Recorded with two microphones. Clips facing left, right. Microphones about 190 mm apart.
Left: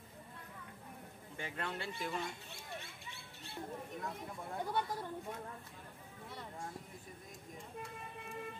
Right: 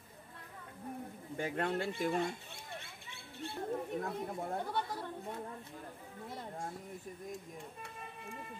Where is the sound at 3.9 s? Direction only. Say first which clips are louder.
Right 7 dB; 45° right (ahead or behind).